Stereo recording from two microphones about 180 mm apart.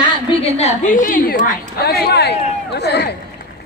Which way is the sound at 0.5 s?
40° left (ahead or behind).